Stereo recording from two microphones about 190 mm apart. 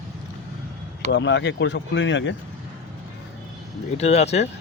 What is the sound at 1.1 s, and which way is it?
Speech, 70° left (ahead or behind).